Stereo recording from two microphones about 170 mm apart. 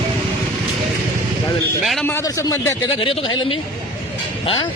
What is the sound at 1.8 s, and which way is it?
Speech, centre (ahead or behind).